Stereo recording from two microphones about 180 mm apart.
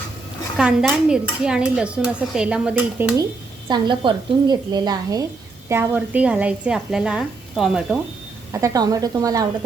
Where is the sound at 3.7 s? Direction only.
25° right (ahead or behind); by 7.9 s centre (ahead or behind).